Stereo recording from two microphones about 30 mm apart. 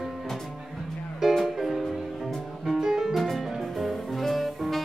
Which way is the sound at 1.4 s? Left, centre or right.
Centre.